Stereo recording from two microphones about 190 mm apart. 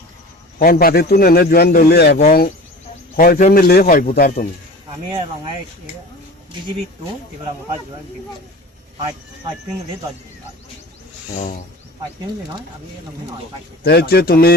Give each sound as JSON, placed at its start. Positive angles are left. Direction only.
{"t": 0.6, "sound": "speech", "side_deg": 50}
{"t": 13.8, "sound": "speech", "side_deg": 55}